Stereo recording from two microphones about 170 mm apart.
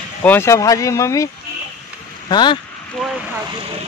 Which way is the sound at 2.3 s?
25° left (ahead or behind).